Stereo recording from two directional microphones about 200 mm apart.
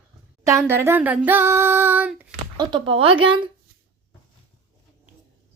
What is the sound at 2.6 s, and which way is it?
Speech, 25° right (ahead or behind).